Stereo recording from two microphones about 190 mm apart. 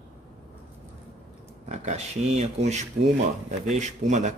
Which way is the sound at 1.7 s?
35° right (ahead or behind).